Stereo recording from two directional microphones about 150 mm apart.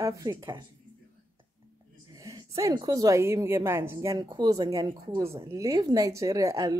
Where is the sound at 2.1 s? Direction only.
20° right (ahead or behind).